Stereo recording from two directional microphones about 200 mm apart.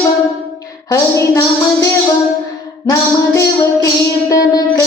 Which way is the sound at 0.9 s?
15° left (ahead or behind).